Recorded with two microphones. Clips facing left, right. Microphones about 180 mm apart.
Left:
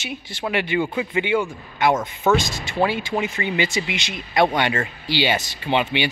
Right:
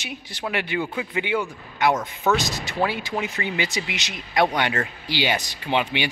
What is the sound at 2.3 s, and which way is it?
Speech, 35° right (ahead or behind).